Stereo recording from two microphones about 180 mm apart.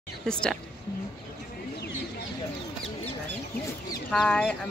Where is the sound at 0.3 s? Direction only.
5° left (ahead or behind).